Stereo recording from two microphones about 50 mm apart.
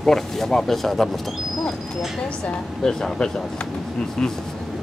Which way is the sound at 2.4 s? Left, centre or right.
Centre.